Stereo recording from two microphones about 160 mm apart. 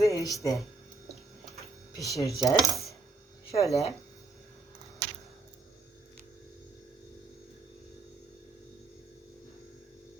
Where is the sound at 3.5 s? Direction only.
20° left (ahead or behind).